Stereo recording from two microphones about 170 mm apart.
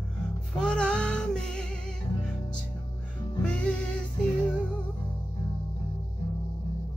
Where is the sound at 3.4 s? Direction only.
5° left (ahead or behind).